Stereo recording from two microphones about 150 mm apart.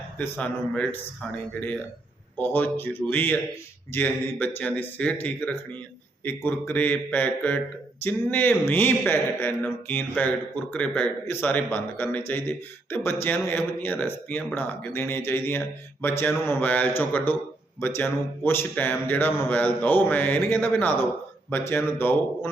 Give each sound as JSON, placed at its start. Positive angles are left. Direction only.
{"t": 0.2, "sound": "a man's voice", "side_deg": 10}
{"t": 2.4, "sound": "a man's voice", "side_deg": 15}